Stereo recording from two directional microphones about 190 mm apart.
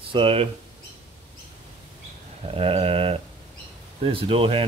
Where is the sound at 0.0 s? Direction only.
30° right (ahead or behind).